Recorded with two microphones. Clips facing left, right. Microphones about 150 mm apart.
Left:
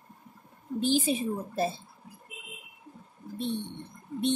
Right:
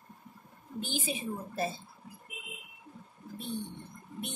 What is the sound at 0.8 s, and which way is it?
Speech, 35° left (ahead or behind).